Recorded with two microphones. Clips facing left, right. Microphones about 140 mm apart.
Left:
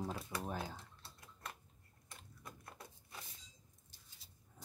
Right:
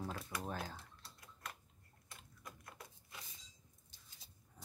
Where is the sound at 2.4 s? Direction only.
30° left (ahead or behind).